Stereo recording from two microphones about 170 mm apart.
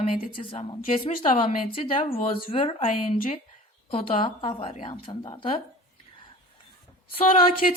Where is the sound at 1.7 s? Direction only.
35° left (ahead or behind).